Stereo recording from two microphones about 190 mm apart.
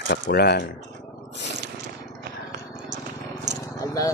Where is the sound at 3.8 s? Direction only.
15° left (ahead or behind).